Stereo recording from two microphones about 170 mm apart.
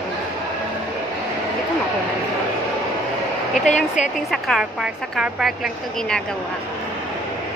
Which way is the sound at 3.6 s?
45° left (ahead or behind).